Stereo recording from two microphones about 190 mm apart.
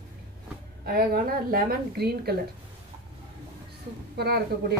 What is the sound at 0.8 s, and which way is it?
A woman's voice, 50° right (ahead or behind).